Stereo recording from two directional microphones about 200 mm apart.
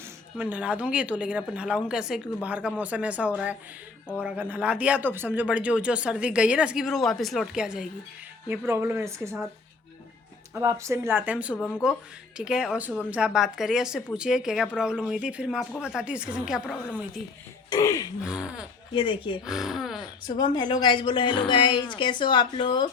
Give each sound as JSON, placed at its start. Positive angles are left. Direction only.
{"t": 0.3, "sound": "a woman's voice", "side_deg": -5}
{"t": 10.6, "sound": "a woman's voice", "side_deg": -15}
{"t": 11.5, "sound": "speech", "side_deg": 10}
{"t": 12.4, "sound": "speech", "side_deg": -5}
{"t": 17.7, "sound": "throat clearing", "side_deg": 15}
{"t": 18.2, "sound": "speech", "side_deg": -5}
{"t": 18.9, "sound": "a woman's voice", "side_deg": 25}
{"t": 19.5, "sound": "speech", "side_deg": 0}
{"t": 20.2, "sound": "a woman's voice", "side_deg": 20}